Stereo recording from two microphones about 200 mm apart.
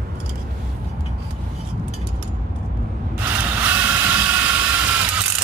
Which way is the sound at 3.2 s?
10° right (ahead or behind).